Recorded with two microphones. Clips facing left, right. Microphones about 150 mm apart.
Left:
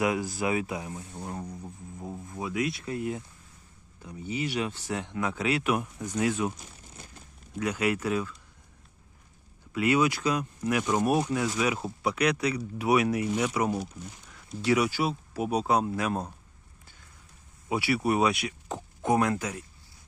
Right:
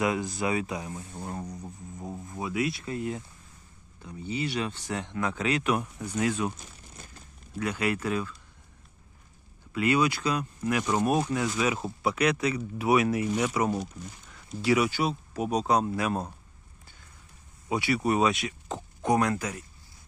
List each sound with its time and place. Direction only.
0.0 s speech: 5° left (ahead or behind)
7.6 s speech: 10° left (ahead or behind)
9.7 s speech: 10° left (ahead or behind)
17.7 s speech: 5° left (ahead or behind)
19.1 s speech: 20° left (ahead or behind)